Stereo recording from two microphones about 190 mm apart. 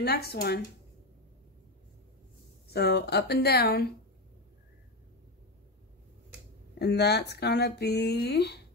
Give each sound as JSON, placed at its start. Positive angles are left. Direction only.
{"t": 0.0, "sound": "speech", "side_deg": 55}
{"t": 2.7, "sound": "speech", "side_deg": 60}
{"t": 6.8, "sound": "speech", "side_deg": 60}